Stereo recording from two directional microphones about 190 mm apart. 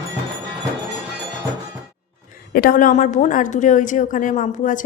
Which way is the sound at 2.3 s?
50° left (ahead or behind).